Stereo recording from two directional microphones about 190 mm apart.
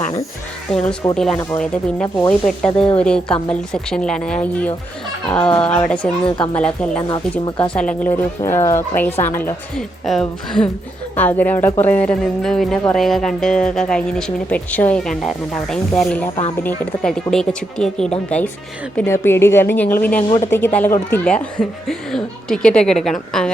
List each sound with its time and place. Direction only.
0.7 s speech: 5° left (ahead or behind)
6.2 s speech: 25° left (ahead or behind)
6.6 s speech: 5° left (ahead or behind)
7.1 s speech: 25° left (ahead or behind)
7.7 s speech: 5° left (ahead or behind)